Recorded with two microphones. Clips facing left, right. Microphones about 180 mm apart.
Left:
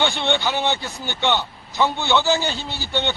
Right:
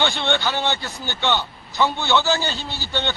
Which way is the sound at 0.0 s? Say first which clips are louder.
Left 1 dB; 15° left (ahead or behind).